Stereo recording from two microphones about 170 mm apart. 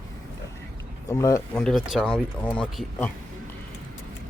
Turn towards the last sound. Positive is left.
turn(degrees=5)  # may be behind; listen again after turning